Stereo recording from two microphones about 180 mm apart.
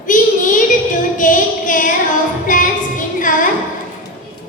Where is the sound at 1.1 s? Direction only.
45° left (ahead or behind).